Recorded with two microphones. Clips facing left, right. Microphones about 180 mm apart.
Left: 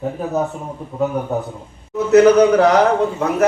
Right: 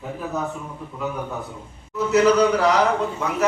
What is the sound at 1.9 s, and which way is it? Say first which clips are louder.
Speech: left 7 dB; 60° left (ahead or behind).